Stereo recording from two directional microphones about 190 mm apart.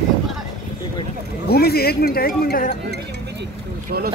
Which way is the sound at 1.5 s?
55° left (ahead or behind).